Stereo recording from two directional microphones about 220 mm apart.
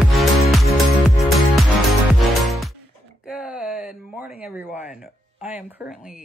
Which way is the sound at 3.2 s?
5° right (ahead or behind).